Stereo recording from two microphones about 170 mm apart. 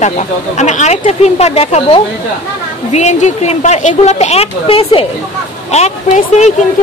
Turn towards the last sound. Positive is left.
turn(degrees=40)  # may be behind; listen again after turning